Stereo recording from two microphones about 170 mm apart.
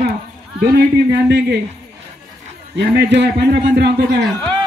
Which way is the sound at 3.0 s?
85° right.